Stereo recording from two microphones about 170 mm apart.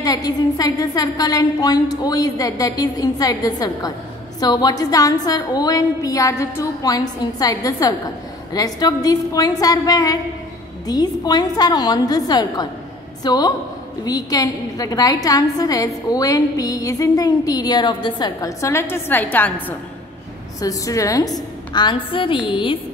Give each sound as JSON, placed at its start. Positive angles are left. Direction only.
{"t": 0.0, "sound": "a woman's voice", "side_deg": 20}
{"t": 20.6, "sound": "a woman's voice", "side_deg": 20}